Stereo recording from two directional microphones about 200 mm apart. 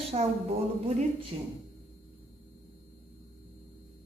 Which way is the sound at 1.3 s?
25° right (ahead or behind).